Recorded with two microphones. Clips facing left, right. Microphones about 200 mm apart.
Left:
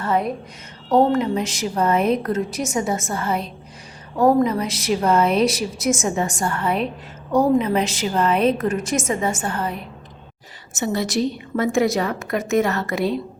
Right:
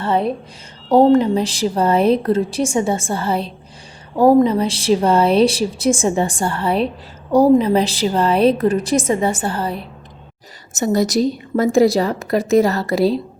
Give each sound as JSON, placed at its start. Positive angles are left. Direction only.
{"t": 0.0, "sound": "a woman's voice", "side_deg": -30}